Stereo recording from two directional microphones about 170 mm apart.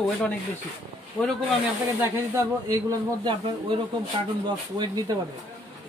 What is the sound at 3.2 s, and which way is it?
Speech, 30° right (ahead or behind).